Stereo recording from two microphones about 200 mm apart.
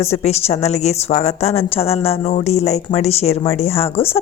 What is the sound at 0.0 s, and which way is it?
A woman's voice, 30° left (ahead or behind).